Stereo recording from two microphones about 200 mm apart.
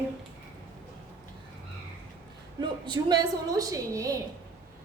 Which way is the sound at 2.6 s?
20° right (ahead or behind).